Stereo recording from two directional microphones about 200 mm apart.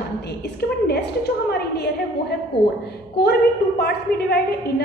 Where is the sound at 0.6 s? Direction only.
50° left (ahead or behind).